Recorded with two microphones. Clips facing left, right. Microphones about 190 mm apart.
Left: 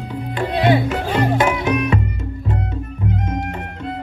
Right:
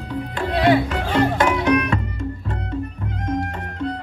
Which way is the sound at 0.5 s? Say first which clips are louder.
Even; 20° left (ahead or behind).